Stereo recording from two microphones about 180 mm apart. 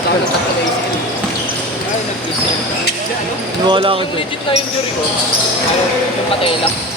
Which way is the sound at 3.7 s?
25° right (ahead or behind).